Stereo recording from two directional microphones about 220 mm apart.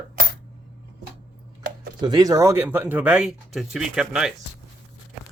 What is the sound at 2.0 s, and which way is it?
Speech, 20° right (ahead or behind).